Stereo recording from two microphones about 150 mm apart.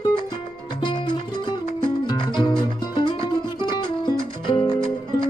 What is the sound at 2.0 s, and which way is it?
Music, 30° left (ahead or behind).